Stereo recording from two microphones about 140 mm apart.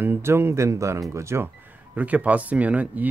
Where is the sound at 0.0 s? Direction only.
15° right (ahead or behind).